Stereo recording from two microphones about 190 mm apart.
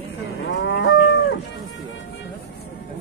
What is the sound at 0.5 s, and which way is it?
Livestock, 70° left (ahead or behind).